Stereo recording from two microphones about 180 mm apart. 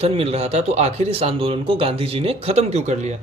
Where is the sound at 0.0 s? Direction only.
35° right (ahead or behind).